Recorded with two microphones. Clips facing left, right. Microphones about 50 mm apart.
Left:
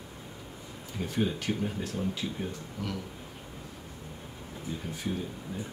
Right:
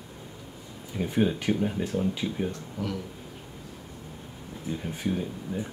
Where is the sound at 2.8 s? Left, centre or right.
Centre.